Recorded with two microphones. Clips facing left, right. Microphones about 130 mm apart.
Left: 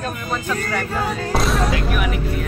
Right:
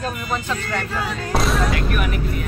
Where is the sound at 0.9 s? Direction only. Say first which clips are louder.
Left 3 dB; 45° left (ahead or behind).